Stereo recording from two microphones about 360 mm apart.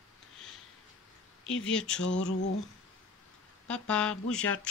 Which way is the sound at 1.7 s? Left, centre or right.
Centre.